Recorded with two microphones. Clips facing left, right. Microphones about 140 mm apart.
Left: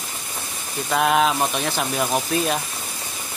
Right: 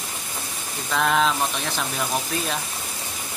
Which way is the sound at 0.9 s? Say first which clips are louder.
Left 3 dB; 10° left (ahead or behind).